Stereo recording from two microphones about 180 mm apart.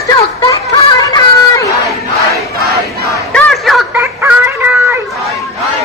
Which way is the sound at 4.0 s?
10° right (ahead or behind).